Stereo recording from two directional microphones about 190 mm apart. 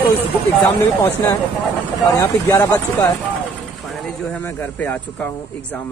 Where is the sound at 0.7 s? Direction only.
10° left (ahead or behind).